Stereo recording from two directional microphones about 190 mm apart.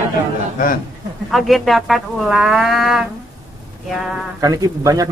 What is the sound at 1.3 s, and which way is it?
Speech, centre (ahead or behind).